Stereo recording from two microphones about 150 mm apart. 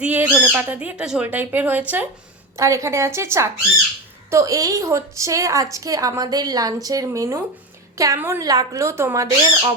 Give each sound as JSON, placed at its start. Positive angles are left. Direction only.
{"t": 0.0, "sound": "speech", "side_deg": -10}